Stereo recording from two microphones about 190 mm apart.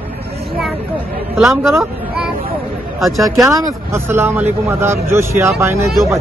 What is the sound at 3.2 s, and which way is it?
Speech, 15° right (ahead or behind).